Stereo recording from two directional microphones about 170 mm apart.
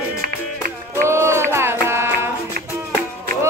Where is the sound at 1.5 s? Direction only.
15° right (ahead or behind).